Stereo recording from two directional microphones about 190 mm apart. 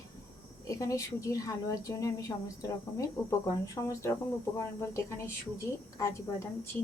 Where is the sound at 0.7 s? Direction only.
15° left (ahead or behind).